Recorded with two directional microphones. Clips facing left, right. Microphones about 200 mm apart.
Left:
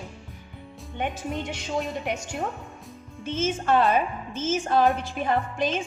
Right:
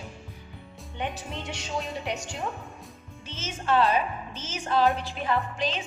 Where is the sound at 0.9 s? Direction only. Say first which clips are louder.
Left 4 dB; 50° left (ahead or behind).